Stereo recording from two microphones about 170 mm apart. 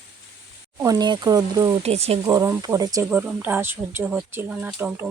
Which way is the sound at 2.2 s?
20° right (ahead or behind).